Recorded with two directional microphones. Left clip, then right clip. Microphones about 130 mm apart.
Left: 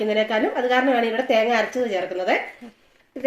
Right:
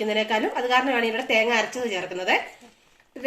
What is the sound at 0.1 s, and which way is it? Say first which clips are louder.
A woman's voice: left 2 dB; 15° left (ahead or behind).